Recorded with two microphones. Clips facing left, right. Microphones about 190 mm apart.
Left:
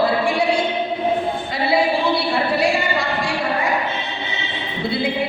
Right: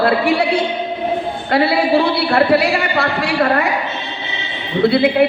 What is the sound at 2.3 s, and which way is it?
A man's voice, 65° right (ahead or behind).